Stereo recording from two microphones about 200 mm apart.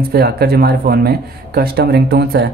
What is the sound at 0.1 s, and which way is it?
Speech, 50° right (ahead or behind).